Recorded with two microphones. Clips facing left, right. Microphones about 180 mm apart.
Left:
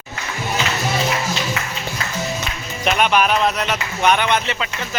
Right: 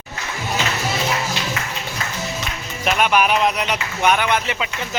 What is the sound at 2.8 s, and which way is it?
Speech, 5° right (ahead or behind).